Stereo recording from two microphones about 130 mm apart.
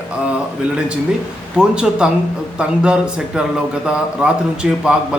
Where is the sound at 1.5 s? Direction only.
5° right (ahead or behind).